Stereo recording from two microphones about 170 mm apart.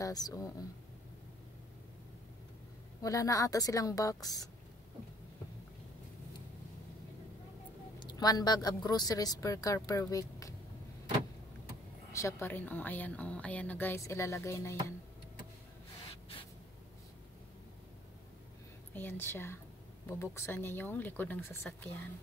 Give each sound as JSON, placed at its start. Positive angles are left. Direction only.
{"t": 0.0, "sound": "a woman's voice", "side_deg": 20}
{"t": 3.0, "sound": "a woman's voice", "side_deg": 20}
{"t": 8.0, "sound": "a woman's voice", "side_deg": 25}
{"t": 12.1, "sound": "speech", "side_deg": 15}
{"t": 18.9, "sound": "speech", "side_deg": 10}